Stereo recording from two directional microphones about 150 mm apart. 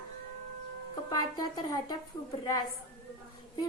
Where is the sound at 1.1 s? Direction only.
25° left (ahead or behind).